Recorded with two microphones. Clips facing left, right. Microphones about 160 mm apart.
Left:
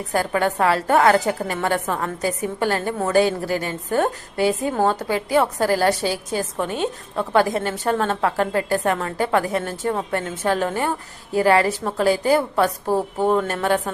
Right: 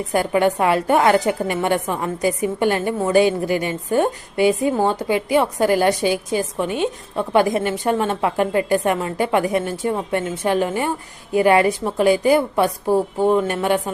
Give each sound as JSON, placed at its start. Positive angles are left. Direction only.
{"t": 0.1, "sound": "a woman's voice", "side_deg": -15}